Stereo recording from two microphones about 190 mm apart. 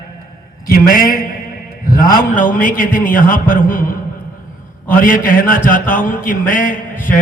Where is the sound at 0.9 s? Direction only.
45° left (ahead or behind).